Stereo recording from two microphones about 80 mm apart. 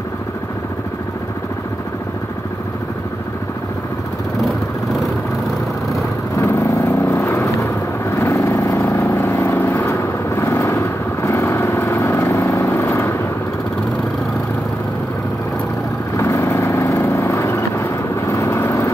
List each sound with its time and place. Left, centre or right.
6.4 s vehicle: left
9.6 s vehicle: left
9.8 s vehicle: left
16.2 s vehicle: left